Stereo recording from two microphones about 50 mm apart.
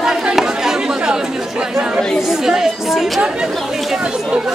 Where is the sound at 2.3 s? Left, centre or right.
Centre.